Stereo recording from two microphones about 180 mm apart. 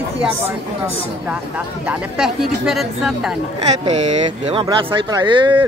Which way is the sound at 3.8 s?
35° right (ahead or behind).